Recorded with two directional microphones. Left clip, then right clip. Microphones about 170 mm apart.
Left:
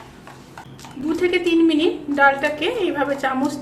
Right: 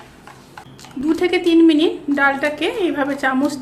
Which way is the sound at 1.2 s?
60° right (ahead or behind).